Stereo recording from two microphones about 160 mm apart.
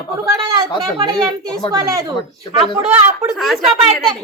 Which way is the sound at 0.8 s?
25° right (ahead or behind).